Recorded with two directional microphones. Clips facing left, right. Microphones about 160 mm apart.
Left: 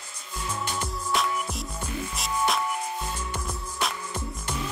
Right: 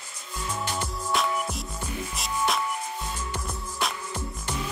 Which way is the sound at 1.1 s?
Centre (ahead or behind).